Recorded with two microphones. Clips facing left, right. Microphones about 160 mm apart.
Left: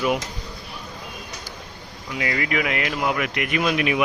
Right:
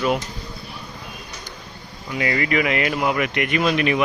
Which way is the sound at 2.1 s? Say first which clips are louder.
Right 3 dB; centre (ahead or behind).